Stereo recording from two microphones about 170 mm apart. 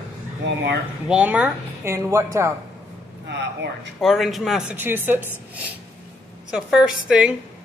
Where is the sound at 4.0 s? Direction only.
Centre (ahead or behind).